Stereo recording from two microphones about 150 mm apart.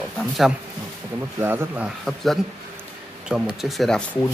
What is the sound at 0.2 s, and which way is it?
Speech, centre (ahead or behind).